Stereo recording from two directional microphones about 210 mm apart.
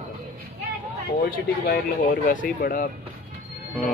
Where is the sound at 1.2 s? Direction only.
45° left (ahead or behind).